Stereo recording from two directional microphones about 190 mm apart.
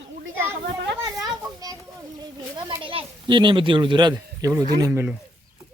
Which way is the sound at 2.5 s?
25° right (ahead or behind).